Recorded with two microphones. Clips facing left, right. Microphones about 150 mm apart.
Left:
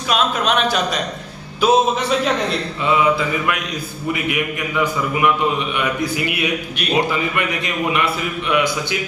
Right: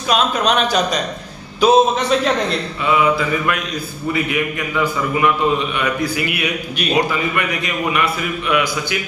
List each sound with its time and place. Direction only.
0.1 s a man's voice: centre (ahead or behind)
4.1 s a man's voice: 15° left (ahead or behind)